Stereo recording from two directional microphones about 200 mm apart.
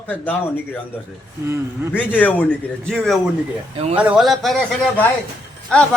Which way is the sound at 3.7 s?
30° right (ahead or behind).